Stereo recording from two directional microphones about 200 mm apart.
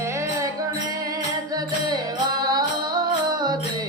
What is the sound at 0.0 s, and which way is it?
Music, 15° right (ahead or behind).